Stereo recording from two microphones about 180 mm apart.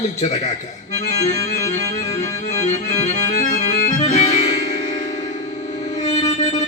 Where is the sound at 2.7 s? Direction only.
40° left (ahead or behind).